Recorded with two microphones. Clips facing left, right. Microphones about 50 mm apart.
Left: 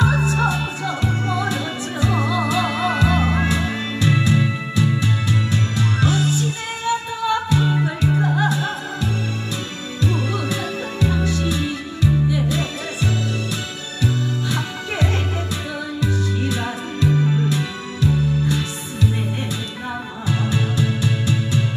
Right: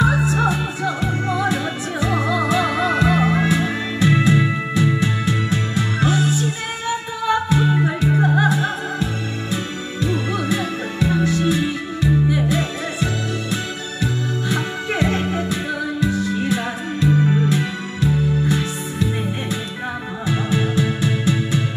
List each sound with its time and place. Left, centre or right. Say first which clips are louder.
0.0 s music: right 1 dB; centre
20.2 s music: right 2 dB; right